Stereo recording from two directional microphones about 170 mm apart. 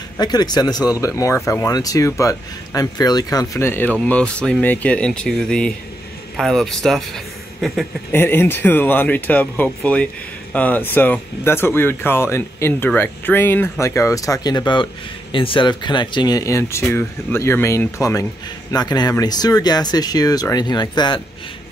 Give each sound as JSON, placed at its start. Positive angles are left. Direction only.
{"t": 0.2, "sound": "speech", "side_deg": 25}
{"t": 8.1, "sound": "speech", "side_deg": 10}